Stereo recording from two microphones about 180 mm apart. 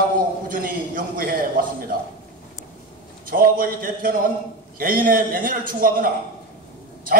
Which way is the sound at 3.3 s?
50° right (ahead or behind).